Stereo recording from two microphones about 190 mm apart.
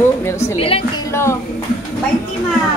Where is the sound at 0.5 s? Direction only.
30° left (ahead or behind).